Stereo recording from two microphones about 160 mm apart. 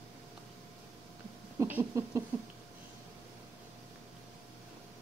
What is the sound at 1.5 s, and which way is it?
Speech, 15° right (ahead or behind).